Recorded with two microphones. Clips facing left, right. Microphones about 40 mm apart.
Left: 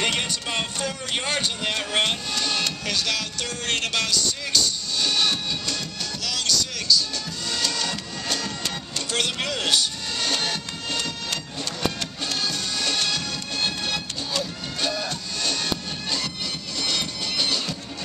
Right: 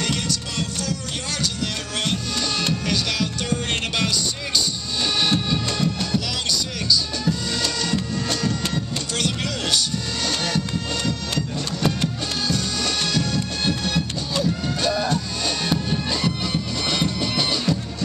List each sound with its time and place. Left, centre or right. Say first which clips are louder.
0.0 s music: even; left
2.7 s music: right 3 dB; centre
7.2 s music: right 4 dB; centre